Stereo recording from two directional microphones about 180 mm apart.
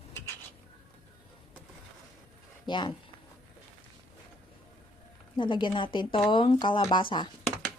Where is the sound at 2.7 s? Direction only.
25° left (ahead or behind).